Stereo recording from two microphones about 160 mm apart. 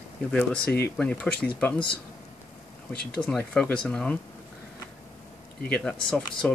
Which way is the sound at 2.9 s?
80° left.